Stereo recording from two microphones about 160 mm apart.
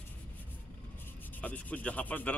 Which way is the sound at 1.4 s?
10° left (ahead or behind).